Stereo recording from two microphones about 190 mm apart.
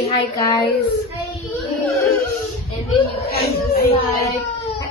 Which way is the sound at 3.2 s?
55° left (ahead or behind).